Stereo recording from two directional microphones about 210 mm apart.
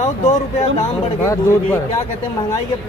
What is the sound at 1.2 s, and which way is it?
Speech, 15° left (ahead or behind).